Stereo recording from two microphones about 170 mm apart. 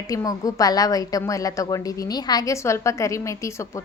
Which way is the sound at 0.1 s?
20° left (ahead or behind).